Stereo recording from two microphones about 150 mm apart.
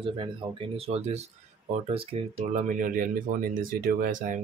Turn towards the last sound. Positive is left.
turn(degrees=-60)  # may be behind; listen again after turning